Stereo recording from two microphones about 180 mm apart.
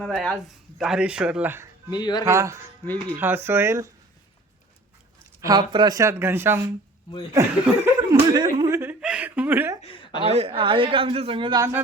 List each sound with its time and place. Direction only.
0.1 s speech: centre (ahead or behind)
1.9 s speech: 25° left (ahead or behind)
2.2 s speech: 15° right (ahead or behind)
2.8 s speech: 10° left (ahead or behind)
3.2 s speech: 10° right (ahead or behind)
5.4 s speech: 20° right (ahead or behind)
7.7 s chuckle: 10° right (ahead or behind)
9.8 s chuckle: 30° left (ahead or behind)
10.2 s a man's voice: 35° right (ahead or behind)